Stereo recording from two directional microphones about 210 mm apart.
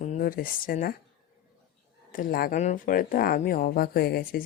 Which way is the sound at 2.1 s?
45° left (ahead or behind).